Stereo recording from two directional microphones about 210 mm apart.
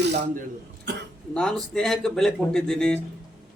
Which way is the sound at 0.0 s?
55° right (ahead or behind).